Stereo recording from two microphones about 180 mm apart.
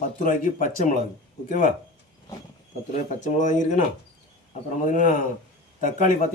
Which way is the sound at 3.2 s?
45° left (ahead or behind).